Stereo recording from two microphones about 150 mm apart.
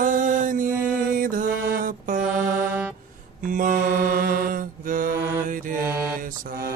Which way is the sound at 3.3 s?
60° right (ahead or behind).